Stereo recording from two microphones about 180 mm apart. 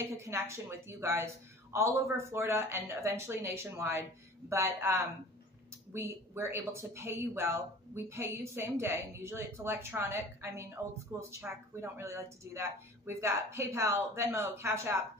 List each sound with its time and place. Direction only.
0.1 s speech: 15° right (ahead or behind)